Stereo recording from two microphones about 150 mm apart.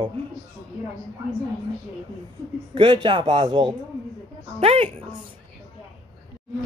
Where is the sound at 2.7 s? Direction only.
30° right (ahead or behind).